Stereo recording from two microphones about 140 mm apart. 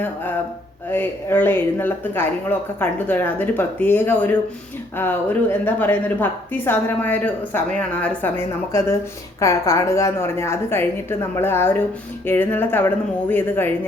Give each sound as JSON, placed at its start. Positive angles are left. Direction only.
{"t": 0.9, "sound": "a woman's voice", "side_deg": 15}